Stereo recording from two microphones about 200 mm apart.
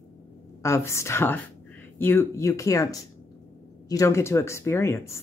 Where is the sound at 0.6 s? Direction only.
15° left (ahead or behind).